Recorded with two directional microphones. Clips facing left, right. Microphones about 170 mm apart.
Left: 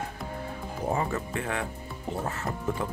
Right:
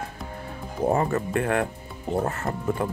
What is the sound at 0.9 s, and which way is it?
Speech, 55° right (ahead or behind).